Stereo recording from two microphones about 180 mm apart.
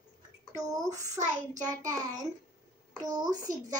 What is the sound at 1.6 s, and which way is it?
A child's voice, 20° right (ahead or behind).